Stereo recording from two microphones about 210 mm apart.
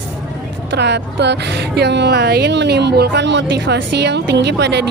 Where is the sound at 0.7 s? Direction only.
55° right (ahead or behind).